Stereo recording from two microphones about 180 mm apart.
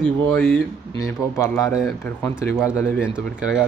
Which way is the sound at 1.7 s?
Centre (ahead or behind).